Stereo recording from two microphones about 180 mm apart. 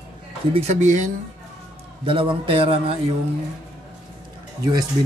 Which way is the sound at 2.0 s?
30° right (ahead or behind).